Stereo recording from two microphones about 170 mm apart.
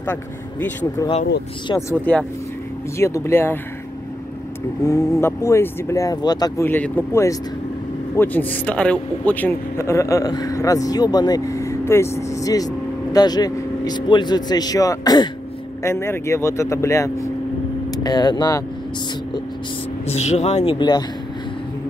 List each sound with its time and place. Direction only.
0.0 s speech: 10° left (ahead or behind)
4.8 s a man's voice: 20° left (ahead or behind)
20.1 s speech: 40° left (ahead or behind)